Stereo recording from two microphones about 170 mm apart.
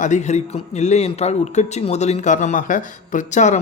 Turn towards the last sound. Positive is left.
turn(degrees=45)  # may be behind; listen again after turning